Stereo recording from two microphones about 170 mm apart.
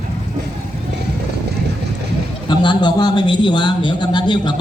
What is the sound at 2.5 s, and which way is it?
A man's voice, 25° left (ahead or behind).